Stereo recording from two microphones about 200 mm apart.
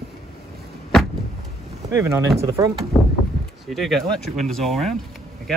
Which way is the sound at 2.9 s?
5° left (ahead or behind).